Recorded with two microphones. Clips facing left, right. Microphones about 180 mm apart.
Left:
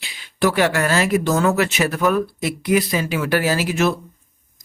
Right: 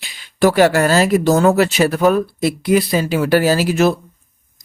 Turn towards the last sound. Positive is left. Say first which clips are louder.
# right 5 dB
turn(degrees=-35)  # may be behind; listen again after turning